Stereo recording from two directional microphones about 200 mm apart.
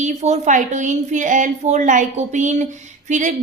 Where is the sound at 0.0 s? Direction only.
35° right (ahead or behind).